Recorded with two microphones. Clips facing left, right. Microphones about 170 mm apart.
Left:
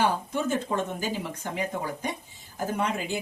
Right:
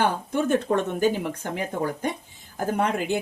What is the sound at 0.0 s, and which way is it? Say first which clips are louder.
A woman's voice: right 2 dB; 60° right (ahead or behind).